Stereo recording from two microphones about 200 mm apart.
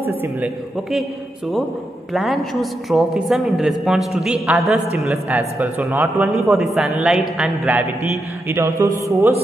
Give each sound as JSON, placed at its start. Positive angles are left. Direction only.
{"t": 0.0, "sound": "a sound", "side_deg": -10}
{"t": 2.1, "sound": "a woman's voice", "side_deg": 0}
{"t": 8.5, "sound": "mantra", "side_deg": -15}